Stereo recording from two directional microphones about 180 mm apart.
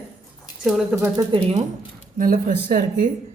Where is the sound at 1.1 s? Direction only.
30° right (ahead or behind).